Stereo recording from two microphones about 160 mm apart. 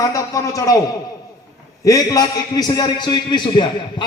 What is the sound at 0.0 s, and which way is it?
Speech, 20° left (ahead or behind).